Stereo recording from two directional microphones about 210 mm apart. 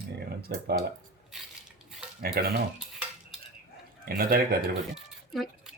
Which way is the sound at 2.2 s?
45° right (ahead or behind).